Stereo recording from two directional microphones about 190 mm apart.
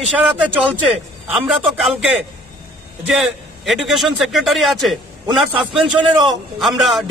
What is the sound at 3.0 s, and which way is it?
Speech, 5° right (ahead or behind).